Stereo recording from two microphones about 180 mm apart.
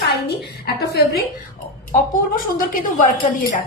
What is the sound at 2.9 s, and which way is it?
Speech, 45° left (ahead or behind).